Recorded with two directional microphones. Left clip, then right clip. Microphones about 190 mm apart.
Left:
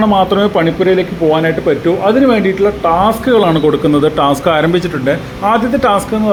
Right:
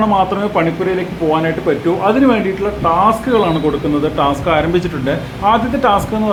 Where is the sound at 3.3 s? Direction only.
25° left (ahead or behind).